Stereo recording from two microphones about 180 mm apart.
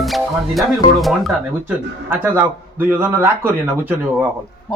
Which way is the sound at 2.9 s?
10° right (ahead or behind).